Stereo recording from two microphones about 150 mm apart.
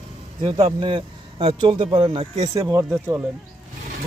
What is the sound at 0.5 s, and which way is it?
Speech, 35° right (ahead or behind).